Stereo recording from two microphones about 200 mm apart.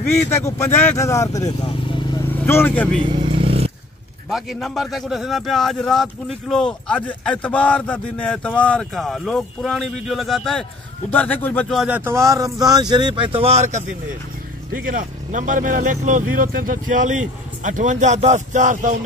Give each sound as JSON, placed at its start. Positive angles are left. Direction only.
{"t": 0.3, "sound": "speech", "side_deg": 15}
{"t": 3.1, "sound": "motorcycle", "side_deg": -25}
{"t": 4.3, "sound": "a man's voice", "side_deg": 0}
{"t": 11.8, "sound": "speech", "side_deg": -10}